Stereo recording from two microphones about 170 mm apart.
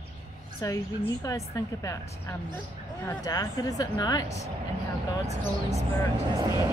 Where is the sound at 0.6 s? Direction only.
20° left (ahead or behind).